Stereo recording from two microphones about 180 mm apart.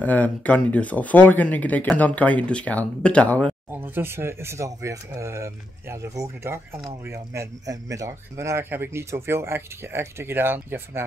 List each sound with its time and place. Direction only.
0.0 s speech: 10° left (ahead or behind)
3.7 s speech: 10° right (ahead or behind)